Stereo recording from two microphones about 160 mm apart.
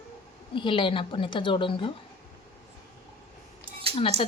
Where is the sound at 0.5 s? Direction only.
30° left (ahead or behind).